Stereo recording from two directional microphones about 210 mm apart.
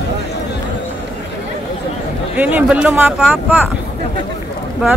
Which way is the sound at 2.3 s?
5° right (ahead or behind).